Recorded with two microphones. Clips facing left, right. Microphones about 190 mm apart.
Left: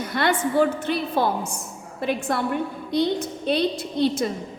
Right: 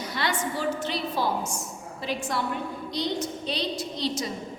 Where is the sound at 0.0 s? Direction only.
55° left (ahead or behind).